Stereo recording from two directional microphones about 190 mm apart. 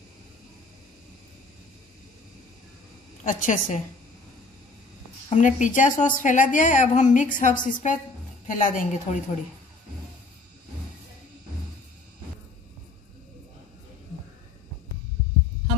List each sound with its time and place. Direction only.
3.3 s a woman's voice: 45° left (ahead or behind)
5.3 s a woman's voice: 40° left (ahead or behind)